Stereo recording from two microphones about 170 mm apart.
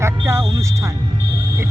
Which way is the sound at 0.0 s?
15° right (ahead or behind).